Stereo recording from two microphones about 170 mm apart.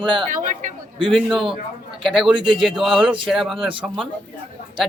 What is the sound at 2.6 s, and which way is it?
Speech, centre (ahead or behind).